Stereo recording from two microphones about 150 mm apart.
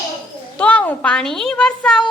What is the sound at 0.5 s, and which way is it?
A child's voice, 10° left (ahead or behind).